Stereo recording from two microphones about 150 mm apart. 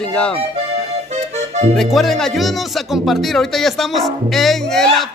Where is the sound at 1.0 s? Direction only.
50° right (ahead or behind).